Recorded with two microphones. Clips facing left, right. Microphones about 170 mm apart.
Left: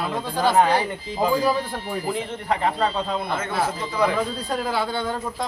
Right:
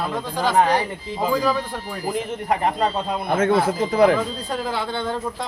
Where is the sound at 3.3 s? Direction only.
50° right (ahead or behind).